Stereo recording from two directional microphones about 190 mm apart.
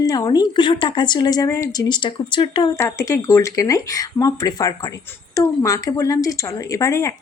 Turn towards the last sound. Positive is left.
turn(degrees=15)  # may be behind; listen again after turning